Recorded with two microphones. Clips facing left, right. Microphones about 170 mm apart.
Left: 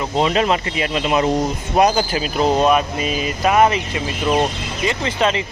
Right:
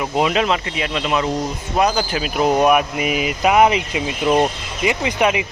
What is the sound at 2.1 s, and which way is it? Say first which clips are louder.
Speech: even; 5° right (ahead or behind).